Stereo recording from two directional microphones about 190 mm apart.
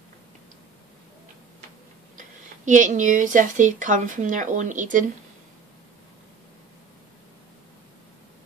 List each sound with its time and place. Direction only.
2.1 s speech: 40° right (ahead or behind)